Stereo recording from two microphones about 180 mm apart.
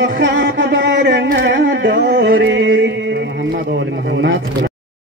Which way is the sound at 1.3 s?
85° right.